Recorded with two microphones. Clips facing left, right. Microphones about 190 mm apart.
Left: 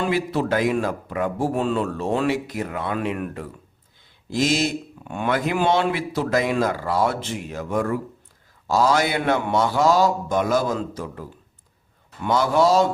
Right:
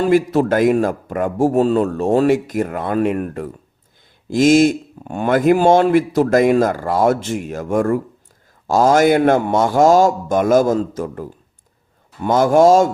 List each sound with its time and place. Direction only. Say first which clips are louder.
0.0 s speech: right 8 dB; 45° right (ahead or behind)